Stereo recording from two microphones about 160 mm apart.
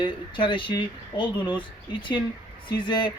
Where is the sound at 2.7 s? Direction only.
30° left (ahead or behind).